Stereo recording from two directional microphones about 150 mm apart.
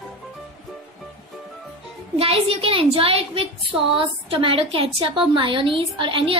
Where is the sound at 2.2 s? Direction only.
40° right (ahead or behind).